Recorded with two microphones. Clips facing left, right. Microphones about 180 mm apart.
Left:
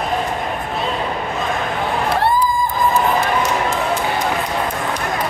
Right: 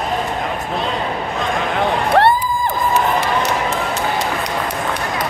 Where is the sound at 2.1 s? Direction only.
70° right (ahead or behind).